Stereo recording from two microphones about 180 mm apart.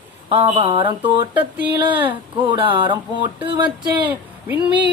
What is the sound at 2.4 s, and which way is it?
Speech, 30° right (ahead or behind).